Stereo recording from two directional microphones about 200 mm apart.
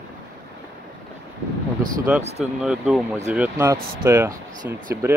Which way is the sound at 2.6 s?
5° right (ahead or behind).